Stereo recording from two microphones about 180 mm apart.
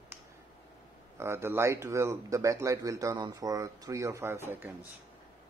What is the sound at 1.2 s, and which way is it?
Speech, 15° right (ahead or behind).